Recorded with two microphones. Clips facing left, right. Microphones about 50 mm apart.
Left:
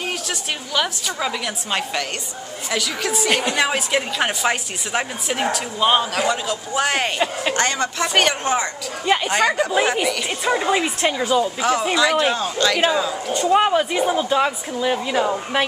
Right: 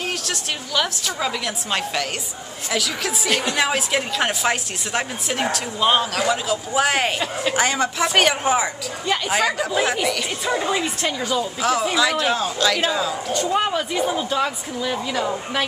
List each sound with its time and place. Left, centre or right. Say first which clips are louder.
0.3 s a woman's voice: left 1 dB; centre
3.3 s a woman's voice: even; centre
9.0 s a sound: left 4 dB; centre
9.3 s a woman's voice: even; centre
10.4 s a woman's voice: left 3 dB; left
13.5 s speech: left 7 dB; centre